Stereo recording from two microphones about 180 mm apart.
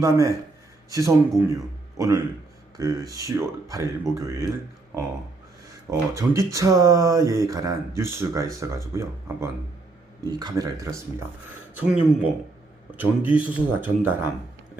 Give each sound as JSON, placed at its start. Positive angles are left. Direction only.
{"t": 0.0, "sound": "speech", "side_deg": -15}
{"t": 5.9, "sound": "speech", "side_deg": -15}
{"t": 10.2, "sound": "a man's voice", "side_deg": -20}
{"t": 11.8, "sound": "a man's voice", "side_deg": -5}